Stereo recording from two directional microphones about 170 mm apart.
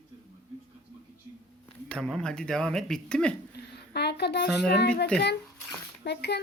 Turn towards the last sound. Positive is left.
turn(degrees=80)